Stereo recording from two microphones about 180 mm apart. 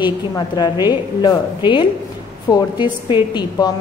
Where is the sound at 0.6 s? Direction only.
25° left (ahead or behind).